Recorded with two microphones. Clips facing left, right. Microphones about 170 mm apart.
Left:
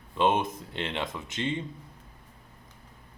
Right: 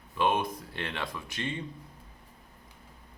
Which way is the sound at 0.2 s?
25° left (ahead or behind).